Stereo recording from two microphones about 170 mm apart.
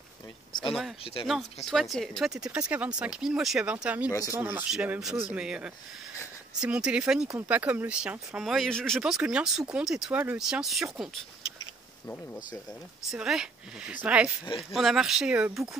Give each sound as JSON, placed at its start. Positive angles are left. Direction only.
{"t": 0.5, "sound": "a sound", "side_deg": 25}
{"t": 1.2, "sound": "speech", "side_deg": 0}
{"t": 13.1, "sound": "speech", "side_deg": -5}
{"t": 14.4, "sound": "speech", "side_deg": 30}
{"t": 14.7, "sound": "speech", "side_deg": 0}